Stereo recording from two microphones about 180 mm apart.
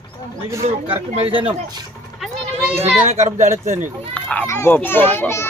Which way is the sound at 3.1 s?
40° right (ahead or behind).